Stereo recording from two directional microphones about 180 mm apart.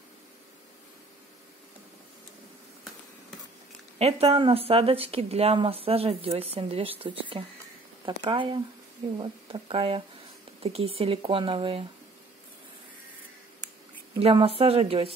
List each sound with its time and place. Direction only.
4.0 s speech: 35° right (ahead or behind)
14.2 s speech: 35° right (ahead or behind)